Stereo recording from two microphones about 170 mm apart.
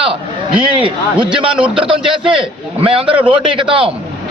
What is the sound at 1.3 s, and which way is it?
Speech, 5° right (ahead or behind).